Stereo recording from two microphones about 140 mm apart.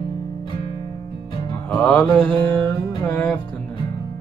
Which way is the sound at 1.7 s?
10° left (ahead or behind).